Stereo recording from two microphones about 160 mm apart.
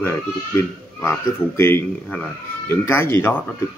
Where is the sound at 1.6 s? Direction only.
15° left (ahead or behind).